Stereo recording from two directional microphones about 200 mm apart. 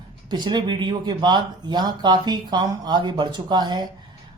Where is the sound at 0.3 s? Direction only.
20° right (ahead or behind).